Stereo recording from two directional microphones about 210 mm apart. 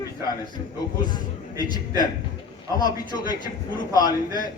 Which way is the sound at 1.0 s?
20° left (ahead or behind).